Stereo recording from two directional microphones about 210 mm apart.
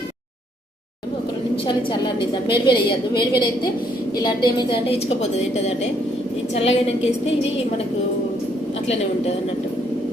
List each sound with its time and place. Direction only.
1.6 s a woman's voice: 25° left (ahead or behind)
6.5 s a woman's voice: 30° left (ahead or behind)